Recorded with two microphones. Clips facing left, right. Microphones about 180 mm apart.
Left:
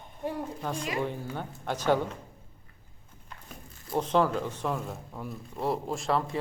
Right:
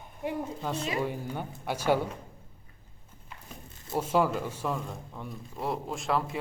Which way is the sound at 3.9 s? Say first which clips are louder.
Left 1 dB; 5° right (ahead or behind).